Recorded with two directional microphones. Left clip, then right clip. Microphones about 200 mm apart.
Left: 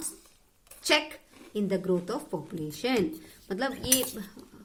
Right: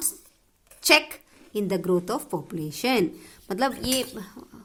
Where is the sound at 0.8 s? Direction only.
50° right (ahead or behind).